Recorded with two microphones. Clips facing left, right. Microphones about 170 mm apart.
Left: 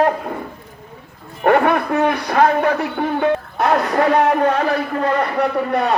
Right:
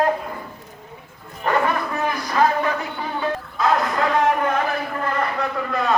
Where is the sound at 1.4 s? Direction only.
65° left (ahead or behind).